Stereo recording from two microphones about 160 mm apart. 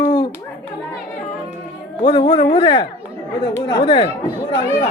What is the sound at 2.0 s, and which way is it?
Speech, 30° left (ahead or behind).